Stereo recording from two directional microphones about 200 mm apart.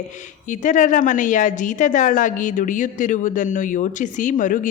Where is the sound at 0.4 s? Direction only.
40° left (ahead or behind).